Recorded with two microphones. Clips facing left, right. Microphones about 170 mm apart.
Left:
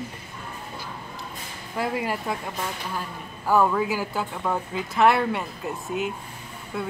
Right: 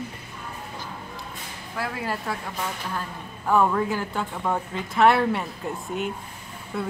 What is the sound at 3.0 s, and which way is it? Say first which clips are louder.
A woman's voice: even; 5° left (ahead or behind).